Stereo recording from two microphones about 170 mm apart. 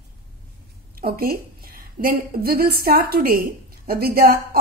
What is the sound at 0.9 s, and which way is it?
A woman's voice, 60° right (ahead or behind).